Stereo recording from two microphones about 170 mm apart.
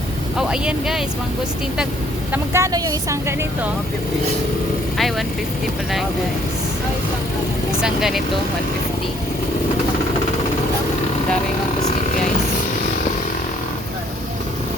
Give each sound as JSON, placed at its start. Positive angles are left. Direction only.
{"t": 0.3, "sound": "speech", "side_deg": -5}
{"t": 2.3, "sound": "a woman's voice", "side_deg": -15}
{"t": 4.9, "sound": "speech", "side_deg": 0}
{"t": 7.8, "sound": "speech", "side_deg": 0}